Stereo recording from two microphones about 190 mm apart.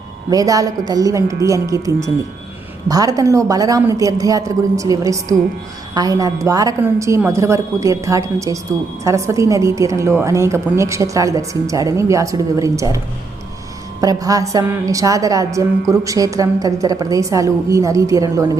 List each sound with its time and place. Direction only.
0.3 s a woman's voice: 20° right (ahead or behind)
14.0 s a woman's voice: 20° right (ahead or behind)